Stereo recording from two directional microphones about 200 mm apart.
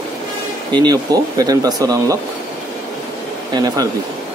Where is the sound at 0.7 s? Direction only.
20° right (ahead or behind).